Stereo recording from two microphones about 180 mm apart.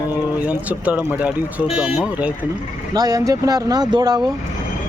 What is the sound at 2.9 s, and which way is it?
Speech, 20° right (ahead or behind).